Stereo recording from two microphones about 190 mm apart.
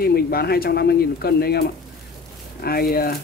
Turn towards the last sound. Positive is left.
turn(degrees=50)  # may be behind; listen again after turning